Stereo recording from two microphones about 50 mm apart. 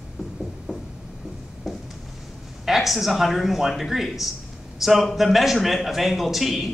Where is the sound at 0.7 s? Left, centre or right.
Centre.